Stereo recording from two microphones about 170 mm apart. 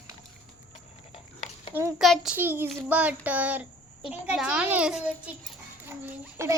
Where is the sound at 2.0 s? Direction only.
Centre (ahead or behind).